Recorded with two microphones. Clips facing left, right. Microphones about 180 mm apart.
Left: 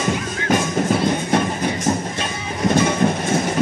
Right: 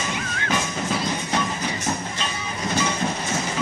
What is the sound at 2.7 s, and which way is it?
Train, 55° left (ahead or behind).